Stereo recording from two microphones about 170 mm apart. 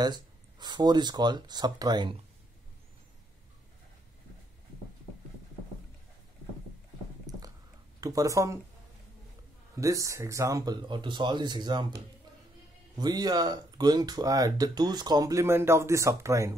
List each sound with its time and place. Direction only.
0.0 s speech: 25° right (ahead or behind)
7.2 s biting: 20° right (ahead or behind)
8.0 s speech: 20° right (ahead or behind)
9.8 s speech: 20° right (ahead or behind)
12.9 s speech: 25° right (ahead or behind)